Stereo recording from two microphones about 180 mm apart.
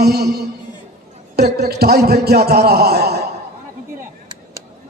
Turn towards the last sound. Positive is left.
turn(degrees=-65)  # may be behind; listen again after turning